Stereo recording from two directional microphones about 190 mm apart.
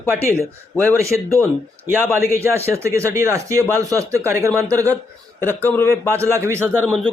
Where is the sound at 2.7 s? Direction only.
15° right (ahead or behind).